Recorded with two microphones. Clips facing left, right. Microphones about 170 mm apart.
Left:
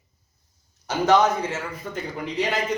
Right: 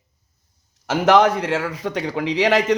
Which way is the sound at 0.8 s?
75° right (ahead or behind).